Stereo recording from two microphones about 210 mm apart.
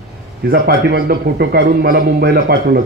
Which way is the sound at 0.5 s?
50° right (ahead or behind).